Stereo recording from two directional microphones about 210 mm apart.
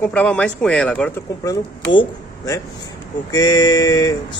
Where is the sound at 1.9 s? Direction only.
15° left (ahead or behind).